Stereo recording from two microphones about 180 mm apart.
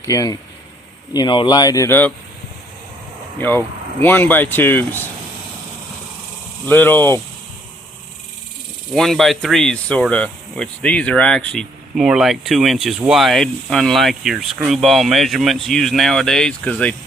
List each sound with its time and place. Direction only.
0.0 s speech: 20° left (ahead or behind)
4.0 s speech: 10° left (ahead or behind)
6.7 s speech: 10° left (ahead or behind)
9.0 s speech: centre (ahead or behind)